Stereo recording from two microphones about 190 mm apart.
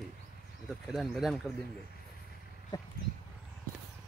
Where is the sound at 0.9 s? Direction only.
Centre (ahead or behind).